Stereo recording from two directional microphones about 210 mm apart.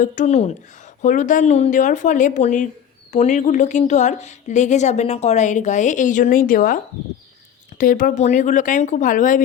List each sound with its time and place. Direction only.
0.0 s a woman's voice: 35° left (ahead or behind)
7.8 s a woman's voice: 40° left (ahead or behind)